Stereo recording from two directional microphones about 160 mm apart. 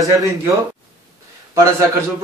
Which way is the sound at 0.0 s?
20° right (ahead or behind).